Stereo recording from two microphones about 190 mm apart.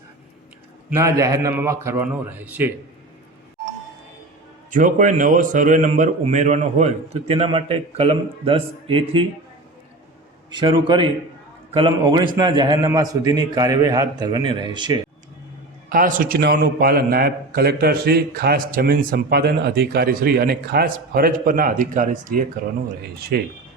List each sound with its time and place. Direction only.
0.9 s a man's voice: 15° right (ahead or behind)
4.7 s a man's voice: 40° right (ahead or behind)
10.5 s a man's voice: 25° right (ahead or behind)
15.9 s a man's voice: 45° right (ahead or behind)
23.3 s speech: 60° right (ahead or behind)